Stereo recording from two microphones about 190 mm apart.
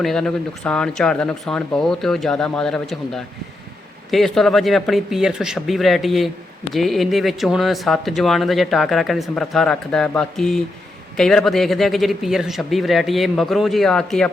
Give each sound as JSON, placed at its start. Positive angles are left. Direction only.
{"t": 0.0, "sound": "speech", "side_deg": 5}